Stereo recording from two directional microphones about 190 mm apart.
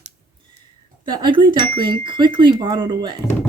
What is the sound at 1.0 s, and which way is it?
Speech, 25° right (ahead or behind).